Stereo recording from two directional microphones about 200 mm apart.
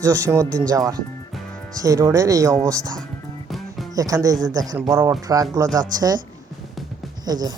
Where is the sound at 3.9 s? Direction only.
15° right (ahead or behind).